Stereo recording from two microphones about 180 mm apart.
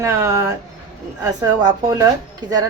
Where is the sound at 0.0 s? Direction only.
15° right (ahead or behind).